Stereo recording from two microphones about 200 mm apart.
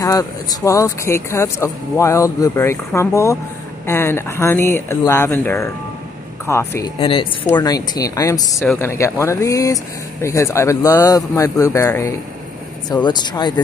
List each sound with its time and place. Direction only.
0.0 s speech: 15° left (ahead or behind)
7.0 s speech: 25° left (ahead or behind)